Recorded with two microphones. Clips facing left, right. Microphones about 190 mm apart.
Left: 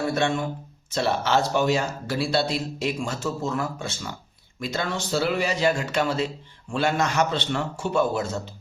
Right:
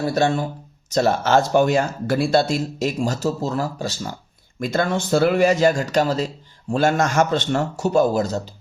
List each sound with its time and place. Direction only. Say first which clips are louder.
0.0 s speech: right 4 dB; 35° right (ahead or behind)
4.6 s speech: right 7 dB; 50° right (ahead or behind)